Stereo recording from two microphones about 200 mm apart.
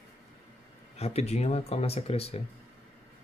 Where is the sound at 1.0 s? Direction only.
30° left (ahead or behind).